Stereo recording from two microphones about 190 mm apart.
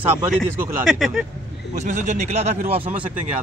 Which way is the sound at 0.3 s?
5° right (ahead or behind).